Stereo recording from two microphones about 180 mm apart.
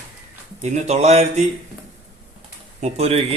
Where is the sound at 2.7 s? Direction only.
35° right (ahead or behind).